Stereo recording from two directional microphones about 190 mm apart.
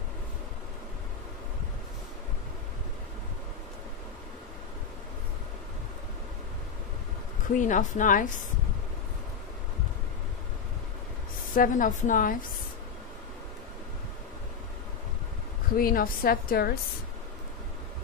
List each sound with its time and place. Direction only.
7.4 s a woman's voice: 40° left (ahead or behind)
11.5 s a woman's voice: 45° left (ahead or behind)
15.8 s a woman's voice: 50° left (ahead or behind)